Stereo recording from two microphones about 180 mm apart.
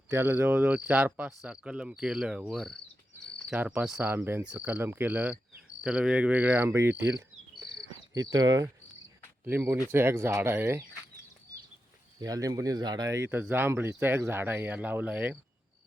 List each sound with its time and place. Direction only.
0.1 s speech: 10° right (ahead or behind)
8.1 s speech: 20° right (ahead or behind)
12.2 s speech: 20° right (ahead or behind)